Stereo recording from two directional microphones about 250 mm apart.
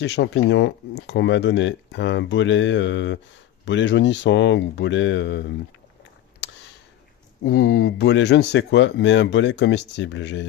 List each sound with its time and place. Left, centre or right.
0.0 s speech: left
7.4 s speech: left